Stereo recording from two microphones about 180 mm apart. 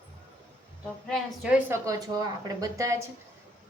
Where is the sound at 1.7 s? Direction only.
20° right (ahead or behind).